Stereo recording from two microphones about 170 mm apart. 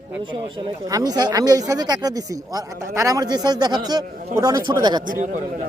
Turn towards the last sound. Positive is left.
turn(degrees=-25)  # may be behind; listen again after turning